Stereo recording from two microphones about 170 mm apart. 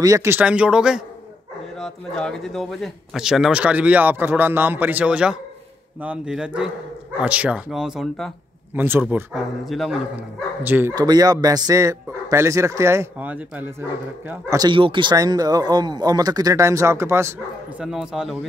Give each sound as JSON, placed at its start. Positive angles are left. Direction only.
{"t": 0.0, "sound": "a man's voice", "side_deg": -20}
{"t": 8.7, "sound": "a man's voice", "side_deg": -10}
{"t": 9.3, "sound": "speech", "side_deg": 0}
{"t": 10.6, "sound": "a man's voice", "side_deg": -10}
{"t": 11.0, "sound": "a man's voice", "side_deg": -20}
{"t": 14.7, "sound": "a man's voice", "side_deg": -30}
{"t": 17.7, "sound": "speech", "side_deg": -5}